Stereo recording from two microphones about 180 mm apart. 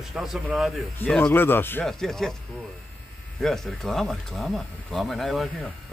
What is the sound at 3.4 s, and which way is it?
A man's voice, centre (ahead or behind).